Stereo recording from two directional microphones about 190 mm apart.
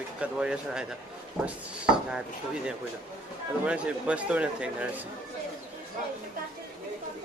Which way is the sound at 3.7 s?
5° right (ahead or behind).